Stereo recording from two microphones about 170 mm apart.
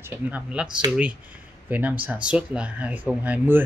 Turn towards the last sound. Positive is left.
turn(degrees=-10)  # may be behind; listen again after turning